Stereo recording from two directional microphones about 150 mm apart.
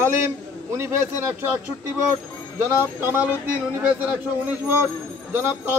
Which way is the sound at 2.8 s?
15° right (ahead or behind).